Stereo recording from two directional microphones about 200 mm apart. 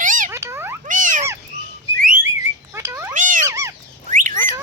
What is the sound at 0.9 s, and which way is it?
Frog, 40° right (ahead or behind).